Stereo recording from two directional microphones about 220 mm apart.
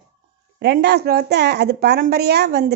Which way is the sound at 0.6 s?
50° right (ahead or behind).